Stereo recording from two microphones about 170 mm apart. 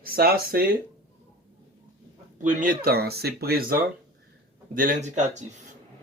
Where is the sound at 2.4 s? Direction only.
50° right (ahead or behind).